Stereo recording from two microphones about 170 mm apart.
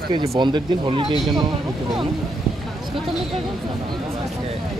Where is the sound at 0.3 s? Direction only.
25° right (ahead or behind).